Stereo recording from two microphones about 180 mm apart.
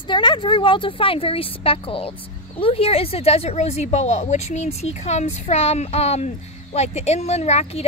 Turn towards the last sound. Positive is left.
turn(degrees=35)  # may be behind; listen again after turning